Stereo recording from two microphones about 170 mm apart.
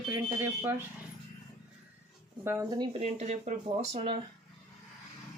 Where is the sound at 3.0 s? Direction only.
40° right (ahead or behind).